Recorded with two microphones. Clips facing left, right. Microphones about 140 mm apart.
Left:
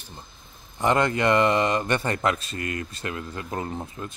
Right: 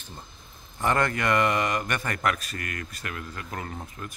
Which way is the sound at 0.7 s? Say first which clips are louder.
Left 3 dB; 20° left (ahead or behind).